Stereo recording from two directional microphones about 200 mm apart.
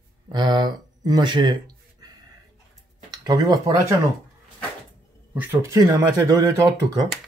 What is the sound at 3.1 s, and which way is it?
Speech, 20° right (ahead or behind).